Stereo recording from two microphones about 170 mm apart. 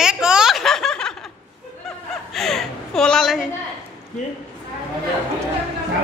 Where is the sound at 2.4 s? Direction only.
Centre (ahead or behind).